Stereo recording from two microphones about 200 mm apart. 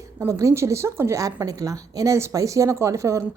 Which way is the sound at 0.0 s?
15° right (ahead or behind).